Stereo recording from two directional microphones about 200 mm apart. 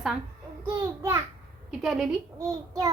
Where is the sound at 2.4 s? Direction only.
15° right (ahead or behind).